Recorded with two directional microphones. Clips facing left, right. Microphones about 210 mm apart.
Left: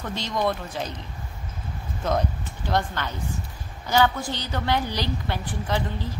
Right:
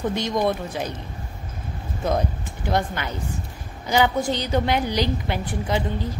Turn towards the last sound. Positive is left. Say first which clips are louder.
# right 3 dB
turn(degrees=-15)  # may be behind; listen again after turning